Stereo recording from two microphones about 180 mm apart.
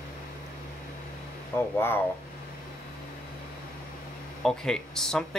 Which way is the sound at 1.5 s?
10° left (ahead or behind).